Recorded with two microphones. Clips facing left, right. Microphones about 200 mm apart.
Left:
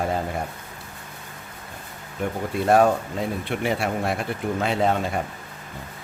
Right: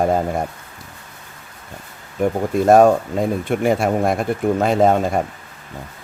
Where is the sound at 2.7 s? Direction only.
45° right (ahead or behind).